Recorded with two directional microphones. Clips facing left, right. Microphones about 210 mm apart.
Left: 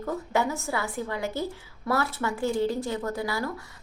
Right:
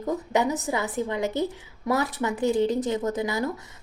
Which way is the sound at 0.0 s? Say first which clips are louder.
Right 3 dB; 20° right (ahead or behind).